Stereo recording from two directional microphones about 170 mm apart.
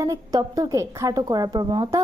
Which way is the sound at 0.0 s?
20° right (ahead or behind).